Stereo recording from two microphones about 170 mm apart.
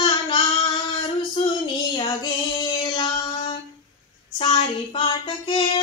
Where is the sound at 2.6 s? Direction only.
25° left (ahead or behind).